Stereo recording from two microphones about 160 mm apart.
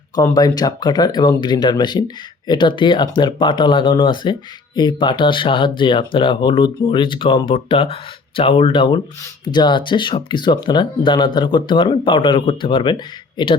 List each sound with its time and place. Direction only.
0.3 s speech: 25° left (ahead or behind)